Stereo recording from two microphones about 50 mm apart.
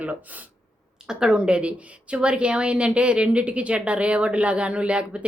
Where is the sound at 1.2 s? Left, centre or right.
Centre.